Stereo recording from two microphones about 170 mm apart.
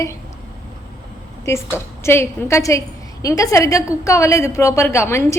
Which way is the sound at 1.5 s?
15° left (ahead or behind).